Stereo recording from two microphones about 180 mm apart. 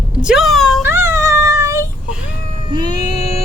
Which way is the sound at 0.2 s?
5° right (ahead or behind).